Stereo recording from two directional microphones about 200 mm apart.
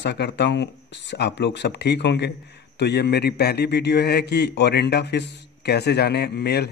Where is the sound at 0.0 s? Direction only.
60° left (ahead or behind).